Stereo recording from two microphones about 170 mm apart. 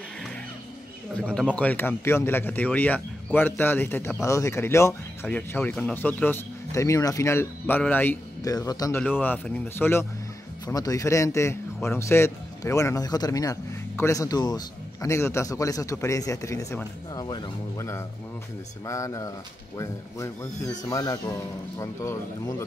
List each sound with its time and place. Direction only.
1.1 s speech: 5° left (ahead or behind)
8.5 s a man's voice: 20° left (ahead or behind)
9.0 s a man's voice: 10° left (ahead or behind)
20.9 s a man's voice: 20° left (ahead or behind)